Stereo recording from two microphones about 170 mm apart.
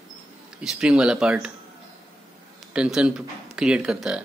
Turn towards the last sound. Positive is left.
turn(degrees=-5)  # may be behind; listen again after turning